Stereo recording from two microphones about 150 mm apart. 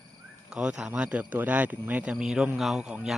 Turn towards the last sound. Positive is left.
turn(degrees=-5)  # may be behind; listen again after turning